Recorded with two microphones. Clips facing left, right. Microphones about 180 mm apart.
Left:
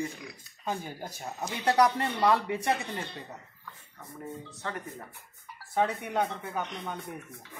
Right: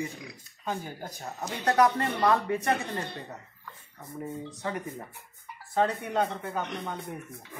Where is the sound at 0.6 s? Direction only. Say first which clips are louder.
Even; 15° left (ahead or behind).